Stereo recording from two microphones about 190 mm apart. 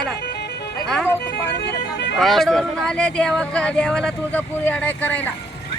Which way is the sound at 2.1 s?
Centre (ahead or behind).